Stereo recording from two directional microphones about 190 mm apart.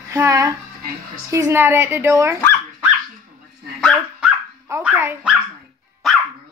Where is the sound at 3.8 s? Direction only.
Centre (ahead or behind).